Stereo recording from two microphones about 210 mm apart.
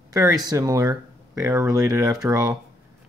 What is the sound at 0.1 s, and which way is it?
Speech, 15° right (ahead or behind).